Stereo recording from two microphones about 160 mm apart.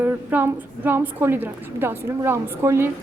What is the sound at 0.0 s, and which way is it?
A woman's voice, 15° right (ahead or behind).